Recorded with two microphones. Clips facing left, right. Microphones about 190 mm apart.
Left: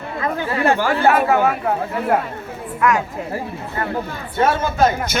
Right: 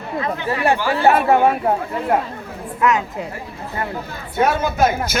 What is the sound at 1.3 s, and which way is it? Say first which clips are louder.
Speech: right 2 dB; 30° right (ahead or behind).